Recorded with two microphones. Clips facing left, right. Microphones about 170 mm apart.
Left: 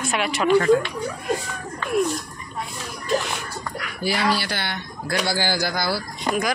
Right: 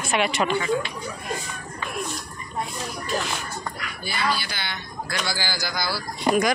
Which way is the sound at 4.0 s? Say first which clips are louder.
Left 6 dB; 90° left.